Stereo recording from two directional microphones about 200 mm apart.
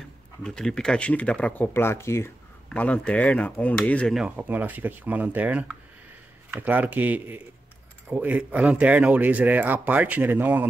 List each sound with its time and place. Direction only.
0.4 s speech: 5° left (ahead or behind)